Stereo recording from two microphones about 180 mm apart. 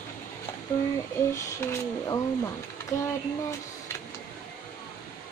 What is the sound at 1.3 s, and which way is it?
Speech, 15° left (ahead or behind).